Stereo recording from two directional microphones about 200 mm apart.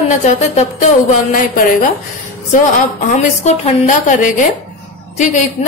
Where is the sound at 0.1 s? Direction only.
40° left (ahead or behind).